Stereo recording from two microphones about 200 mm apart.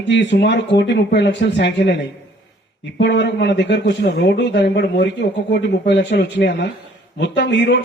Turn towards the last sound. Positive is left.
turn(degrees=60)  # may be behind; listen again after turning